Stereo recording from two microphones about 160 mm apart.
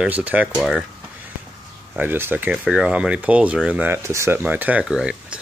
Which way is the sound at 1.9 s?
10° right (ahead or behind).